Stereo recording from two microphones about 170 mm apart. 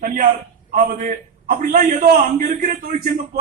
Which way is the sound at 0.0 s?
50° right (ahead or behind).